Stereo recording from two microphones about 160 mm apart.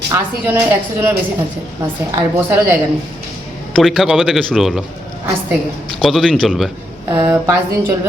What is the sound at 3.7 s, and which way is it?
A man's voice, centre (ahead or behind).